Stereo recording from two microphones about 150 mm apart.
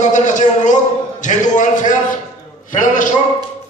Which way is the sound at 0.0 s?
55° left (ahead or behind).